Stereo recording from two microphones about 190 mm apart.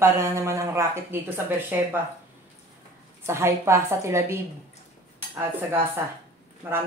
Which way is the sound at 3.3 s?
15° right (ahead or behind).